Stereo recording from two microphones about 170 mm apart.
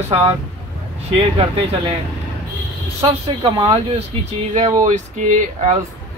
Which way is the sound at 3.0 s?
30° right (ahead or behind).